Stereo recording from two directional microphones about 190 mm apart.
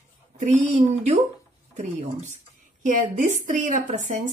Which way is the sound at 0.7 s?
35° right (ahead or behind).